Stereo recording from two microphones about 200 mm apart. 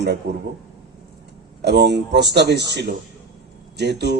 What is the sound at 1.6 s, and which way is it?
A man's voice, 60° right (ahead or behind).